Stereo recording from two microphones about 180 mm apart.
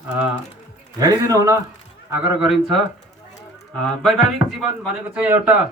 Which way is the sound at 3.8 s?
Centre (ahead or behind).